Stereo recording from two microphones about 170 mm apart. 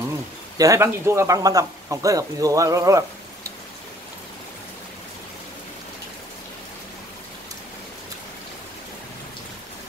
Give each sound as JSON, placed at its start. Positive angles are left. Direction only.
{"t": 0.6, "sound": "speech", "side_deg": -15}